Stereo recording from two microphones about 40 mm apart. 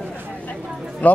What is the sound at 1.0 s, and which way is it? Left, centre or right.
Speech, left.